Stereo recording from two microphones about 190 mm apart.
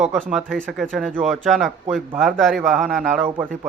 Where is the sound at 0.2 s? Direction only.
Centre (ahead or behind).